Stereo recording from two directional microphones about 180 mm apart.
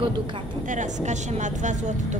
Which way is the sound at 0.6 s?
45° right (ahead or behind).